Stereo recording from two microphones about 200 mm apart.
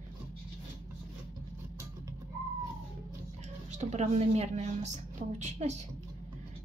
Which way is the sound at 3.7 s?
35° right (ahead or behind).